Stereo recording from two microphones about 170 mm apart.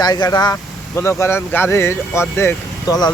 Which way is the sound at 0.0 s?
25° left (ahead or behind).